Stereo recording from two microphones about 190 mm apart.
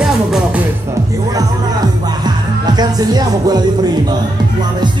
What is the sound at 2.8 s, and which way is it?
Music, 20° right (ahead or behind).